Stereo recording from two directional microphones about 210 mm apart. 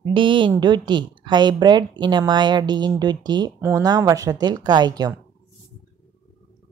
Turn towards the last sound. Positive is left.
turn(degrees=-20)  # may be behind; listen again after turning